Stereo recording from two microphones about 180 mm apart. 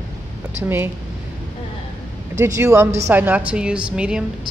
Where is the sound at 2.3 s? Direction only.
15° right (ahead or behind).